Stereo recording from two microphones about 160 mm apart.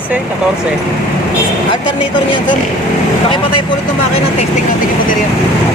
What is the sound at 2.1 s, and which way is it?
Speech, 30° left (ahead or behind).